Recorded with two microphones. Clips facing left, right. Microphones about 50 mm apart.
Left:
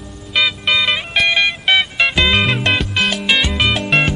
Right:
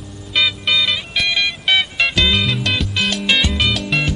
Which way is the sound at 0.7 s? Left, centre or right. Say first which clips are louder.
Left 2 dB; left.